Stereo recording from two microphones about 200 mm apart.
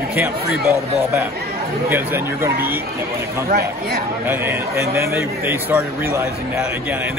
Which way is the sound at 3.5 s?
50° right (ahead or behind).